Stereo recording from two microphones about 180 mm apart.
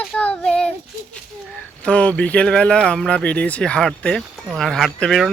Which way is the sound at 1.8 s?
5° left (ahead or behind).